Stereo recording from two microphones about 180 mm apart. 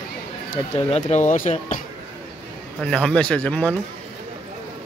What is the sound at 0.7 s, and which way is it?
Speech, 35° left (ahead or behind).